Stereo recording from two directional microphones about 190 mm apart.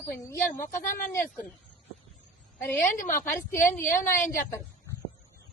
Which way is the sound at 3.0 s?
45° left (ahead or behind).